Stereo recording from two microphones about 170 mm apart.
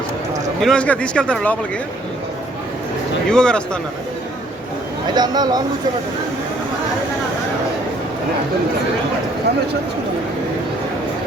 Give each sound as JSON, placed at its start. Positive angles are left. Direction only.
{"t": 0.6, "sound": "speech", "side_deg": 5}
{"t": 3.2, "sound": "speech", "side_deg": 5}
{"t": 5.1, "sound": "speech", "side_deg": -25}